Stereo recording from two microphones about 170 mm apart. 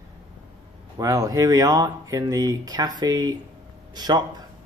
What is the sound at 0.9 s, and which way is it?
Speech, 20° right (ahead or behind).